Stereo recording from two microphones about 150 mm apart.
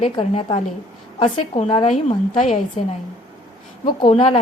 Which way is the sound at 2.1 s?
50° left (ahead or behind).